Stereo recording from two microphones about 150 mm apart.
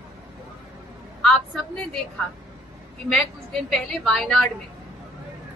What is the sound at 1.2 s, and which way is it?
Speech, 5° left (ahead or behind).